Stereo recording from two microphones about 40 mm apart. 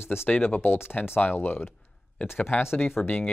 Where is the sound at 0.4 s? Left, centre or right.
Left.